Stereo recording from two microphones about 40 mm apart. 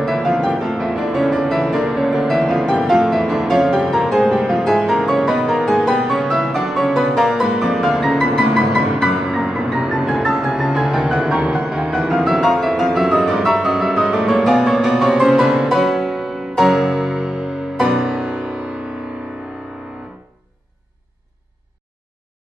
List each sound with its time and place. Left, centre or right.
0.0 s music: centre
0.4 s music: centre
0.7 s music: centre
7.3 s music: centre
8.5 s music: centre
9.0 s music: centre
10.0 s music: centre
10.5 s music: centre
11.4 s music: right
12.4 s music: centre
15.7 s music: centre
18.3 s music: right